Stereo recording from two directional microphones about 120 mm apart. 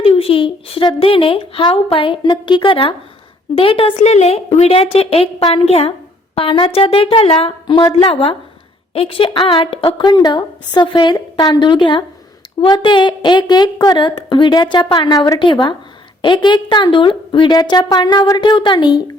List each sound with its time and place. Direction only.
0.0 s a woman's voice: 55° left (ahead or behind)
3.9 s a woman's voice: 70° left (ahead or behind); by 19.1 s 35° left (ahead or behind)